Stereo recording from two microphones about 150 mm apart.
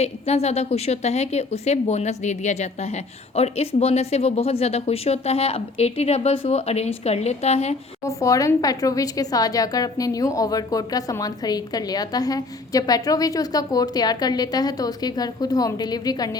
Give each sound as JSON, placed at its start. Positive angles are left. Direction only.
{"t": 0.0, "sound": "a woman's voice", "side_deg": 45}
{"t": 8.0, "sound": "a woman's voice", "side_deg": 20}